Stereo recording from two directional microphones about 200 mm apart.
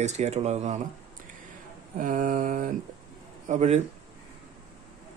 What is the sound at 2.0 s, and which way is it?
Mantra, 45° right (ahead or behind).